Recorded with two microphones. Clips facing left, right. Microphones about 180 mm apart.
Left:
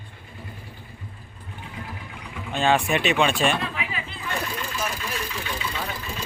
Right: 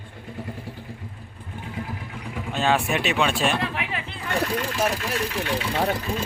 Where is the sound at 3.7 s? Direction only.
65° right (ahead or behind).